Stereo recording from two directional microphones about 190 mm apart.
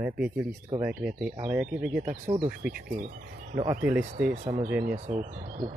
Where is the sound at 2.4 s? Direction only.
50° right (ahead or behind).